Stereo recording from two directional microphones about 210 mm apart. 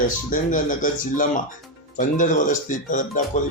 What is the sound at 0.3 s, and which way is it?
Speech, 40° left (ahead or behind).